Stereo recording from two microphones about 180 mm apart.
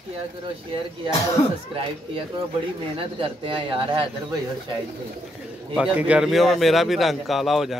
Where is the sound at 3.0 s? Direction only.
30° right (ahead or behind).